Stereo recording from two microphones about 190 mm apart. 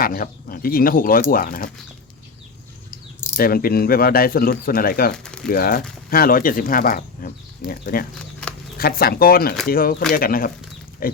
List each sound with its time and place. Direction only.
0.0 s speech: 50° left (ahead or behind)
3.3 s speech: 50° left (ahead or behind)
5.1 s a sound: 5° left (ahead or behind)
5.5 s speech: 50° left (ahead or behind)